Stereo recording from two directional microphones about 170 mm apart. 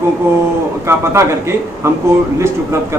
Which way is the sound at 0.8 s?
15° right (ahead or behind).